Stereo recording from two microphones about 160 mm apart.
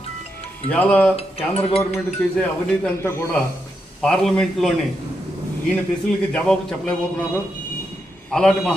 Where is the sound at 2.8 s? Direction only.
15° left (ahead or behind).